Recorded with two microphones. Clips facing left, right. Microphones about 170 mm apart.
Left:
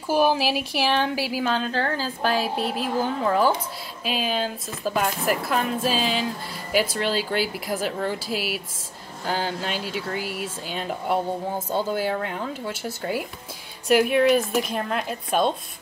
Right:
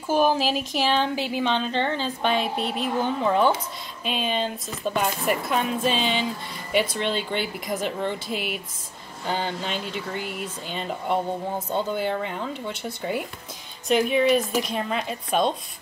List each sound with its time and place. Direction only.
0.1 s speech: 5° left (ahead or behind)